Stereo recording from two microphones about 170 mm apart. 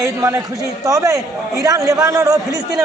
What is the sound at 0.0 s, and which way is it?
A man's voice, 15° right (ahead or behind).